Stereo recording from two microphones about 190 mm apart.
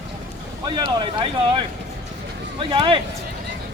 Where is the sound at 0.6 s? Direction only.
25° right (ahead or behind).